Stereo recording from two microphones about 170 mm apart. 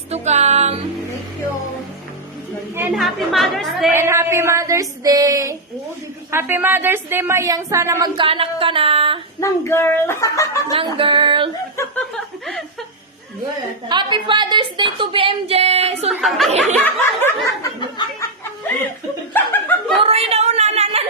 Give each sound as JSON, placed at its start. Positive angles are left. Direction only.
{"t": 0.1, "sound": "music", "side_deg": -40}
{"t": 2.9, "sound": "a woman's voice", "side_deg": 0}
{"t": 3.9, "sound": "speech", "side_deg": -15}
{"t": 8.1, "sound": "a sound", "side_deg": -30}
{"t": 9.4, "sound": "speech", "side_deg": 15}
{"t": 10.8, "sound": "a woman's voice", "side_deg": -30}
{"t": 13.8, "sound": "a woman's voice", "side_deg": -25}
{"t": 16.0, "sound": "speech", "side_deg": 0}
{"t": 16.8, "sound": "speech", "side_deg": 15}
{"t": 17.7, "sound": "chuckle", "side_deg": 25}
{"t": 19.3, "sound": "chuckle", "side_deg": 10}
{"t": 20.0, "sound": "a sound", "side_deg": -35}